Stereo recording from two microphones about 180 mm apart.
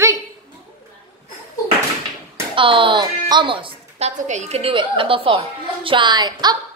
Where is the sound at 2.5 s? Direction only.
30° right (ahead or behind).